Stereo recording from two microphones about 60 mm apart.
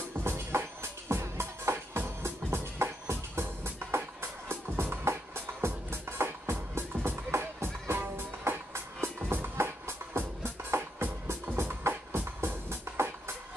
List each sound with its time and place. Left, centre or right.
0.2 s music: right